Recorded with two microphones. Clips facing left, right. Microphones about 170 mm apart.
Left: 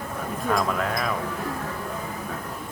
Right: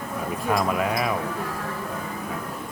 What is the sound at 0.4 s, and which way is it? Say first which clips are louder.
Speech: right 1 dB; 10° right (ahead or behind).